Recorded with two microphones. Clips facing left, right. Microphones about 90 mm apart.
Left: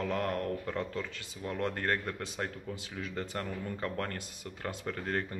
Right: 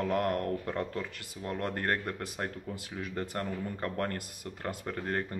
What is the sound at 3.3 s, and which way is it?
Speech, 25° right (ahead or behind).